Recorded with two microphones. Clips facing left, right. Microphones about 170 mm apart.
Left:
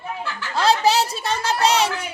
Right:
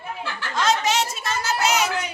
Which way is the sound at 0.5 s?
35° left (ahead or behind).